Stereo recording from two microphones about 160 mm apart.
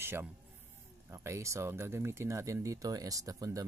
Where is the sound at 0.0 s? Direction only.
15° right (ahead or behind).